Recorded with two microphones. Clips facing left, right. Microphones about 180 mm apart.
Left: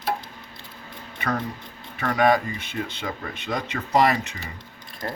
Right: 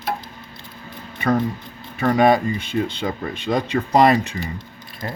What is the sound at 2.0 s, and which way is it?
Speech, 30° right (ahead or behind).